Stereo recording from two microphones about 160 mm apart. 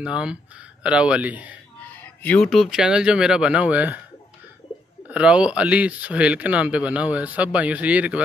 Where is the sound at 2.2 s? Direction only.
5° left (ahead or behind); by 4.0 s 10° right (ahead or behind).